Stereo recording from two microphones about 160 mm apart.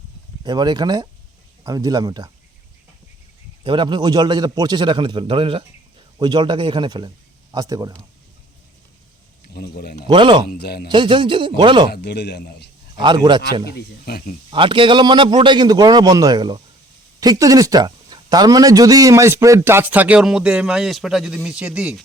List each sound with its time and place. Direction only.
0.4 s a man's voice: 25° right (ahead or behind)
3.6 s a man's voice: 30° right (ahead or behind)
9.5 s speech: 75° left (ahead or behind)
10.1 s speech: 30° right (ahead or behind)
10.4 s speech: 80° left
10.8 s speech: 30° right (ahead or behind)
11.9 s a man's voice: 90° left
13.0 s a man's voice: 30° right (ahead or behind)
13.7 s speech: 65° left (ahead or behind)
14.5 s a man's voice: 30° right (ahead or behind); by 22.0 s 5° right (ahead or behind)